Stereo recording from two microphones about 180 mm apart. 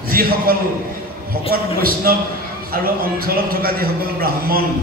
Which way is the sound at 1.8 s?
55° right (ahead or behind).